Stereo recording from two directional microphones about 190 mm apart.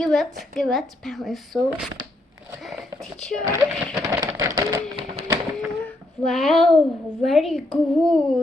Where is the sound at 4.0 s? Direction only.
20° right (ahead or behind).